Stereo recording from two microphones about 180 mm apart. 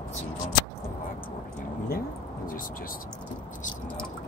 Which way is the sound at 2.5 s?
50° left (ahead or behind).